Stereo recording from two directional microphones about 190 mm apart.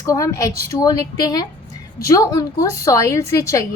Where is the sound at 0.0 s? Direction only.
15° left (ahead or behind).